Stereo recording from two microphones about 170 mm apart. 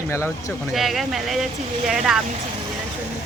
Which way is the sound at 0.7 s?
Centre (ahead or behind).